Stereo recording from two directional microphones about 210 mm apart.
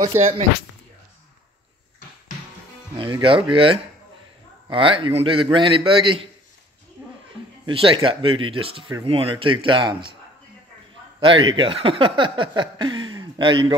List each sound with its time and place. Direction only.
0.2 s speech: 30° right (ahead or behind)
3.0 s speech: 25° right (ahead or behind)
4.6 s speech: 25° right (ahead or behind)
7.6 s speech: 25° right (ahead or behind)
11.1 s speech: 25° right (ahead or behind)